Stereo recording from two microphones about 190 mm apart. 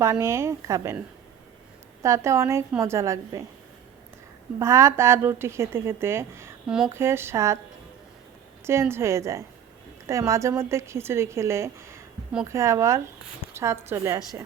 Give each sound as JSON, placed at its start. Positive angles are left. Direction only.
{"t": 0.0, "sound": "speech", "side_deg": -15}
{"t": 4.6, "sound": "speech", "side_deg": -15}
{"t": 8.6, "sound": "speech", "side_deg": -15}